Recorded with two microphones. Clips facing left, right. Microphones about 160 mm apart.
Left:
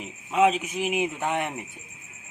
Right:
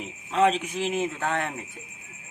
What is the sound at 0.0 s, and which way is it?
A man's voice, 10° left (ahead or behind).